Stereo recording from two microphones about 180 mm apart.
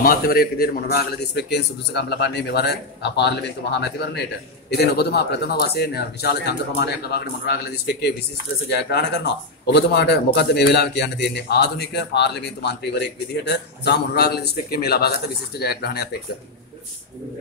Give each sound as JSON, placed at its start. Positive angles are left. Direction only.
{"t": 0.0, "sound": "a man's voice", "side_deg": 55}